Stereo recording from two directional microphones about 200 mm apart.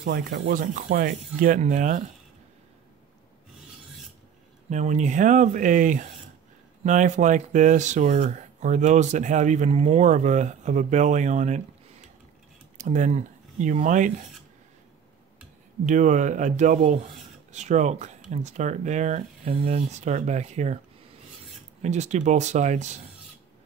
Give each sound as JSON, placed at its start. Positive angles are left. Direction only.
{"t": 0.0, "sound": "speech", "side_deg": -50}
{"t": 4.6, "sound": "speech", "side_deg": -35}
{"t": 12.7, "sound": "speech", "side_deg": -40}
{"t": 15.8, "sound": "speech", "side_deg": -40}
{"t": 21.8, "sound": "speech", "side_deg": -35}